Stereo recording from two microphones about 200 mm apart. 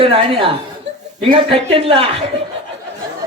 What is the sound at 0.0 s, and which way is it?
A man's voice, 25° right (ahead or behind).